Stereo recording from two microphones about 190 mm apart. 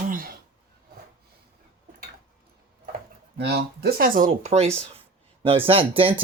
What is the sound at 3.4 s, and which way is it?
Speech, 60° right (ahead or behind).